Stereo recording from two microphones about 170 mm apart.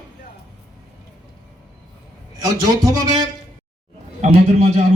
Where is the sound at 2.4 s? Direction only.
20° right (ahead or behind).